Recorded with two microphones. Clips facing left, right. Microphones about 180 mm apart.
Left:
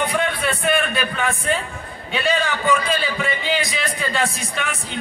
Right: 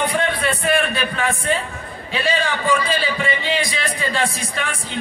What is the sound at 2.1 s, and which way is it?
Music, centre (ahead or behind).